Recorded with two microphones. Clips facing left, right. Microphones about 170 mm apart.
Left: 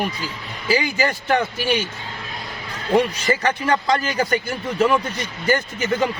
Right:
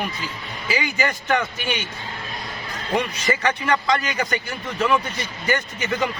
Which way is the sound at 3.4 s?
30° left (ahead or behind).